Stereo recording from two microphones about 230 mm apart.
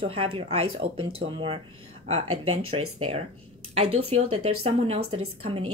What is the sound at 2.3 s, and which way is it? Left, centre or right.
Speech, right.